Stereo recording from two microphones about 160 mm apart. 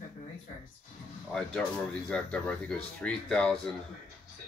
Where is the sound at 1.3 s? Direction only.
5° left (ahead or behind).